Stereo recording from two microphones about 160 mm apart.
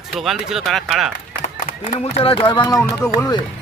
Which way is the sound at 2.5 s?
25° left (ahead or behind).